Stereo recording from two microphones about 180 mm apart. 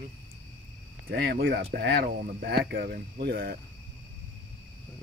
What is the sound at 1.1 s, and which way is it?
Speech, 65° right (ahead or behind).